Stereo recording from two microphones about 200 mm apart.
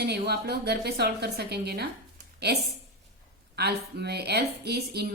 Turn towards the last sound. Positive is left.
turn(degrees=-55)  # may be behind; listen again after turning